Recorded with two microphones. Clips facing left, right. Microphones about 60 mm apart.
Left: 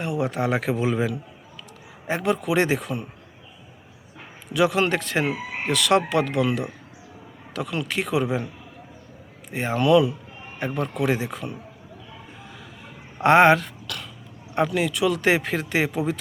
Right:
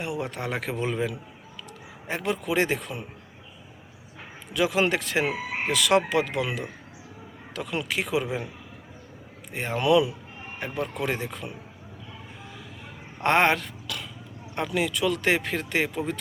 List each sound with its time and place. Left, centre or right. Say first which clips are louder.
0.0 s speech: left 6 dB; centre
4.5 s speech: left 3 dB; centre
7.9 s speech: left 4 dB; centre
9.5 s speech: left 4 dB; centre
9.8 s speech: left 3 dB; centre
10.8 s speech: left 4 dB; centre
13.1 s speech: left 6 dB; centre
13.8 s cough: left 1 dB; centre
14.5 s speech: left 4 dB; centre